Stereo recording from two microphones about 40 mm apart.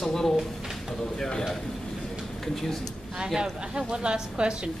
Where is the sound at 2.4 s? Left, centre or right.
Centre.